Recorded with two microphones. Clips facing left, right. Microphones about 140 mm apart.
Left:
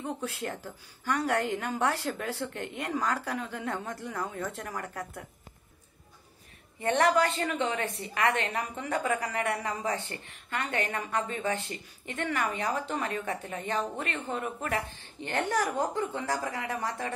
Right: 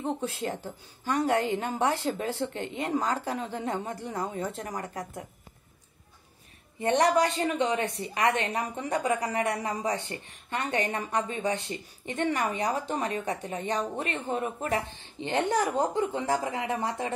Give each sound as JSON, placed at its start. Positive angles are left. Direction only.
{"t": 0.0, "sound": "a woman's voice", "side_deg": -25}
{"t": 6.8, "sound": "a woman's voice", "side_deg": -20}
{"t": 12.2, "sound": "a woman's voice", "side_deg": -35}
{"t": 12.9, "sound": "a woman's voice", "side_deg": -15}